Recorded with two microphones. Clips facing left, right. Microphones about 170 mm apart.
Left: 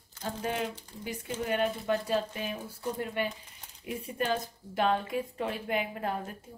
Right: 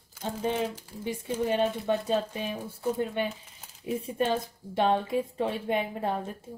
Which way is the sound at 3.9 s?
25° right (ahead or behind).